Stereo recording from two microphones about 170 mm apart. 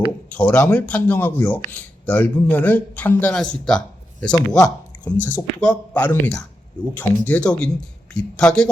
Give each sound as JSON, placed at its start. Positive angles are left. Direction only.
{"t": 0.3, "sound": "speech", "side_deg": 10}